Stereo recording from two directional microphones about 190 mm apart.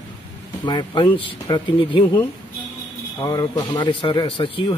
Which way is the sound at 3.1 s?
20° left (ahead or behind).